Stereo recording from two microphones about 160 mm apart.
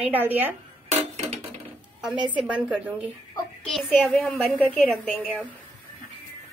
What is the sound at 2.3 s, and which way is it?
A woman's voice, 10° right (ahead or behind).